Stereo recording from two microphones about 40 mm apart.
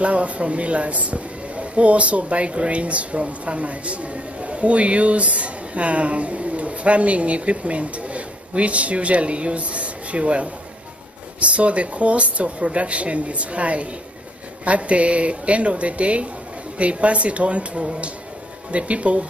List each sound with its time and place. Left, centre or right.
0.0 s speech: right